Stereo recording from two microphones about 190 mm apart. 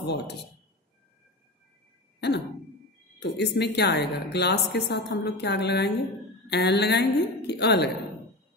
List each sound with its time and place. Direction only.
0.0 s a woman's voice: 60° left (ahead or behind)
2.1 s throat clearing: 60° left (ahead or behind)
3.2 s a woman's voice: 60° left (ahead or behind)